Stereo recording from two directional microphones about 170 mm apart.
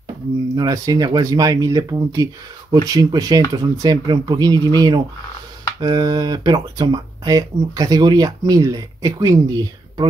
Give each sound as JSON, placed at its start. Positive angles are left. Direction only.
{"t": 0.6, "sound": "speech", "side_deg": -20}